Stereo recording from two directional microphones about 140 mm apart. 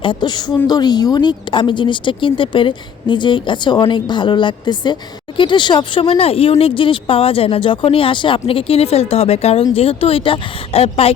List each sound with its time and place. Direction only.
0.0 s speech: 35° left (ahead or behind)